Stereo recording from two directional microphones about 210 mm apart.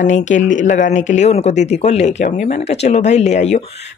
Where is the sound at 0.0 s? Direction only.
35° left (ahead or behind).